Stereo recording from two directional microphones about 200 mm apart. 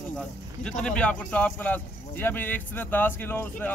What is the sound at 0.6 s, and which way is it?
Speech, 5° left (ahead or behind).